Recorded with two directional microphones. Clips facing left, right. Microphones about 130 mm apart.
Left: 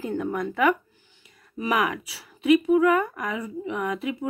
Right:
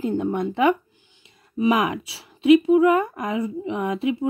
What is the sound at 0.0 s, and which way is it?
Speech, 20° right (ahead or behind).